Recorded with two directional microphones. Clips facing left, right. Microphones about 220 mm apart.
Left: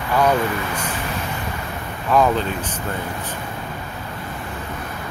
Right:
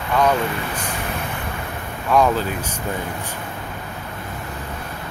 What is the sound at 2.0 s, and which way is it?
Speech, centre (ahead or behind).